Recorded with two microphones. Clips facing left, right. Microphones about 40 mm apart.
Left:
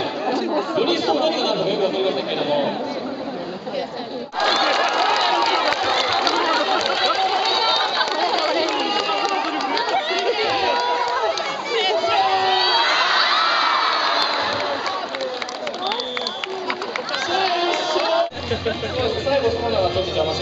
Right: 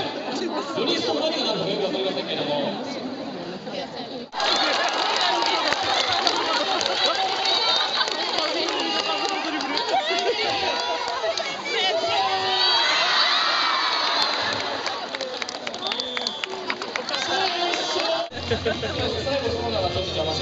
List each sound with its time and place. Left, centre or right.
0.3 s speech: centre
4.4 s crowd: centre
5.2 s chatter: centre
10.2 s run: centre
12.1 s crowd: centre
17.3 s music: centre